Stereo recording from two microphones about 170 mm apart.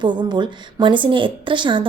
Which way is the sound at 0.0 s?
25° right (ahead or behind).